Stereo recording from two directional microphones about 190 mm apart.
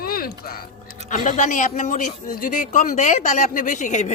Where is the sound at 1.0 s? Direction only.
40° left (ahead or behind).